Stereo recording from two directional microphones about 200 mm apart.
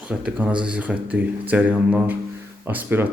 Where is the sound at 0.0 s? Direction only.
5° right (ahead or behind).